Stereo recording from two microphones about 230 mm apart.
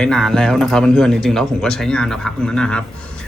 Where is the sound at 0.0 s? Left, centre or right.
Centre.